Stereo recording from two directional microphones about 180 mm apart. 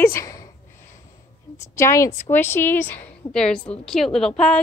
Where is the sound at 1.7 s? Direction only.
15° left (ahead or behind).